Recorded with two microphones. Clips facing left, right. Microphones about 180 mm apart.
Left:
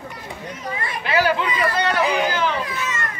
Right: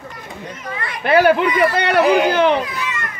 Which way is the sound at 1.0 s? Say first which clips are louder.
Right 7 dB; 55° right (ahead or behind).